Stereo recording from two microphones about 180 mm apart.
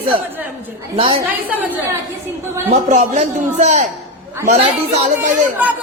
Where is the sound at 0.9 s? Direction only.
30° right (ahead or behind).